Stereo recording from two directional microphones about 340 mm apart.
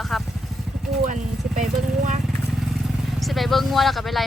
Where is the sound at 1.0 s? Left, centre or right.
Right.